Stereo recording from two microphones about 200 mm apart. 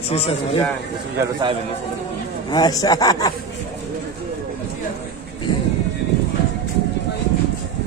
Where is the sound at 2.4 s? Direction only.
20° left (ahead or behind).